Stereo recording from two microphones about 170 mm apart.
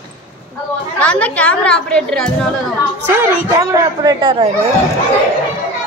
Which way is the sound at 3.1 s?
15° right (ahead or behind).